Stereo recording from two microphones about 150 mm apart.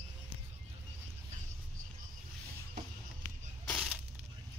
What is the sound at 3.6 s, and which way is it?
Crushing, 5° left (ahead or behind).